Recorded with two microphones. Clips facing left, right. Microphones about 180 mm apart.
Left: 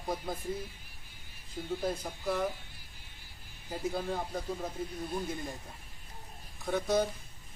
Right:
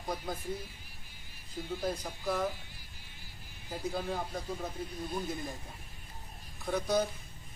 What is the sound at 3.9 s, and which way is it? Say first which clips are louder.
Speech: right 1 dB; centre (ahead or behind).